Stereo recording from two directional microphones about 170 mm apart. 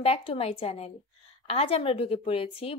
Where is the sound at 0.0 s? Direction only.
35° left (ahead or behind).